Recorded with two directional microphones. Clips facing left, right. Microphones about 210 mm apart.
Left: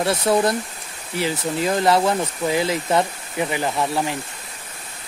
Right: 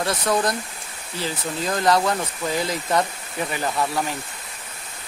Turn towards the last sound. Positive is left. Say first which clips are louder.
# left 2 dB
turn(degrees=15)  # may be behind; listen again after turning